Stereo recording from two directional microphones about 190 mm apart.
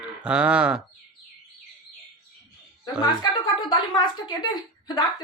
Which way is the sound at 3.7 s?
25° left (ahead or behind).